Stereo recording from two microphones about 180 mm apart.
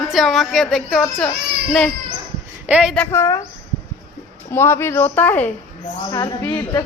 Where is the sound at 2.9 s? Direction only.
15° left (ahead or behind).